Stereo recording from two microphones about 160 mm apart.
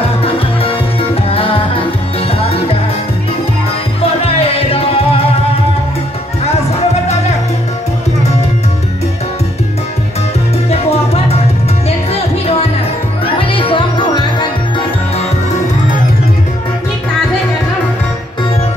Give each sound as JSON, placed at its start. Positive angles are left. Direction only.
{"t": 0.2, "sound": "music", "side_deg": 35}
{"t": 4.2, "sound": "music", "side_deg": 35}
{"t": 10.7, "sound": "salsa music", "side_deg": 40}
{"t": 13.2, "sound": "music", "side_deg": 35}